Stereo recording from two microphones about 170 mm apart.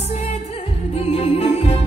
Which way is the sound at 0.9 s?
35° left (ahead or behind).